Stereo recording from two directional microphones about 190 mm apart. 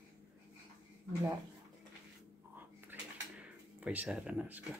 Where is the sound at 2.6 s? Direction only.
10° right (ahead or behind).